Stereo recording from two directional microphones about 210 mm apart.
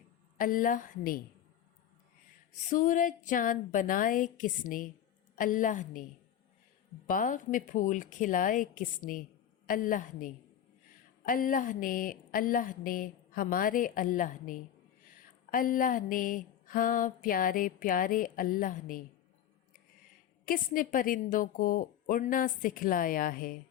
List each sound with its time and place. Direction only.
0.3 s mantra: 40° left (ahead or behind)
2.6 s mantra: 40° left (ahead or behind)
7.1 s mantra: 40° left (ahead or behind)
20.4 s mantra: 40° left (ahead or behind)